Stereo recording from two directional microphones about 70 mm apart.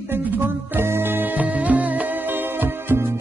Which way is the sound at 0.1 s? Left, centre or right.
Right.